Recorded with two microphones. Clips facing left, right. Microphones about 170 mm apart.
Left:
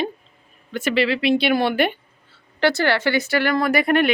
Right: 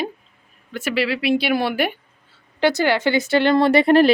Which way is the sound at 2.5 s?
15° right (ahead or behind).